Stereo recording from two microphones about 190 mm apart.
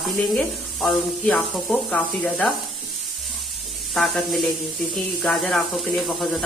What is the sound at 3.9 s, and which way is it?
Speech, centre (ahead or behind).